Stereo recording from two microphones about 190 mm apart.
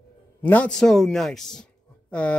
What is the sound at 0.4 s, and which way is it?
A man's voice, 10° left (ahead or behind).